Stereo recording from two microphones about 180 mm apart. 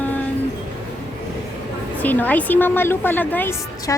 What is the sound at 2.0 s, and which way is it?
A woman's voice, 10° left (ahead or behind).